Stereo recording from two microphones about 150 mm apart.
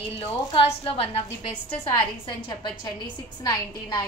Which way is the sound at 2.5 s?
30° left (ahead or behind).